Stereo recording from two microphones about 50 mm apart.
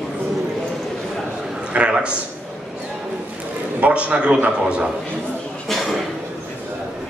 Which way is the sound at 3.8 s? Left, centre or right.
Right.